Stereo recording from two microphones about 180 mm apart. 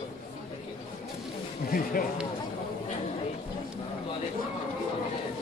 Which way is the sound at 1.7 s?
50° left (ahead or behind).